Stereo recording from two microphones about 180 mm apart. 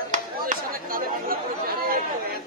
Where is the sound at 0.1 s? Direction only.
50° right (ahead or behind).